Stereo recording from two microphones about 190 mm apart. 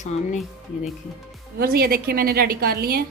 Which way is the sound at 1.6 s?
50° right (ahead or behind).